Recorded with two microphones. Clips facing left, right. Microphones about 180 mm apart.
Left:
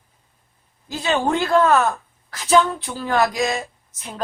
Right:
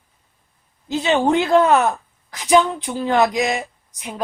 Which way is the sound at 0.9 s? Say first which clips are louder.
Right 4 dB; 20° right (ahead or behind).